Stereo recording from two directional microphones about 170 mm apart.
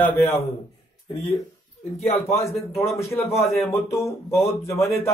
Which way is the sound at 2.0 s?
35° left (ahead or behind).